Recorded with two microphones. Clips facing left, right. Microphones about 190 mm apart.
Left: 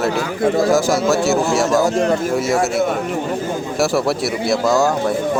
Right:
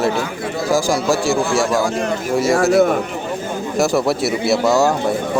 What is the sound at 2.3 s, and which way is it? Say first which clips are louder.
Speech: right 4 dB; centre (ahead or behind).